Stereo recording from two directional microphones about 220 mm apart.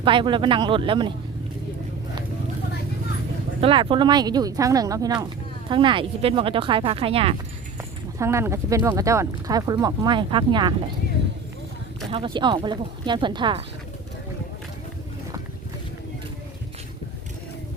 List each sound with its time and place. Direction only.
0.0 s speech: 20° right (ahead or behind)
3.6 s speech: 25° right (ahead or behind)
8.2 s speech: 10° right (ahead or behind)
12.1 s speech: 20° right (ahead or behind)